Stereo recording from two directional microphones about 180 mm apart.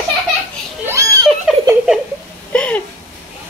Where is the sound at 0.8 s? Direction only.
15° right (ahead or behind).